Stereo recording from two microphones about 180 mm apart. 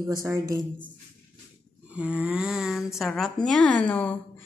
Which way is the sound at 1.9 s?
5° right (ahead or behind).